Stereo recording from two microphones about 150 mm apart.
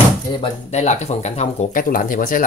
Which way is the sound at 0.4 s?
45° left (ahead or behind).